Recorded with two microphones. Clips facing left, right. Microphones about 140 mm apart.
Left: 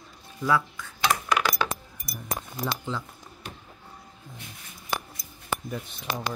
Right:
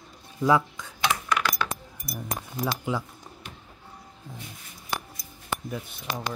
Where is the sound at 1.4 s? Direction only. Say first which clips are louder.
Left 1 dB; 15° left (ahead or behind).